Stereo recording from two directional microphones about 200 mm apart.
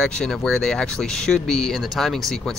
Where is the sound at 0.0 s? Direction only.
5° left (ahead or behind).